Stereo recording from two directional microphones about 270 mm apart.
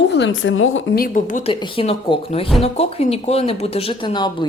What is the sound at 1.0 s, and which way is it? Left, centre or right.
A woman's voice, left.